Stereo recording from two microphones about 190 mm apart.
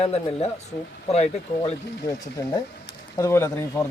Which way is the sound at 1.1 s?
35° left (ahead or behind).